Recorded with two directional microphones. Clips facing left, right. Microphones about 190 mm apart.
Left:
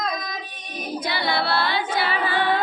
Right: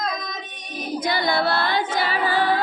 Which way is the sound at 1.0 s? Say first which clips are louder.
Right 3 dB; 45° right (ahead or behind).